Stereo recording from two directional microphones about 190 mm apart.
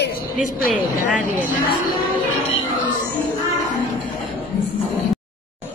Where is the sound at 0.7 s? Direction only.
5° right (ahead or behind).